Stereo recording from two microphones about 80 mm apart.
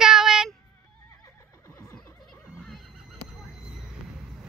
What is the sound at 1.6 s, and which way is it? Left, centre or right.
Neigh, left.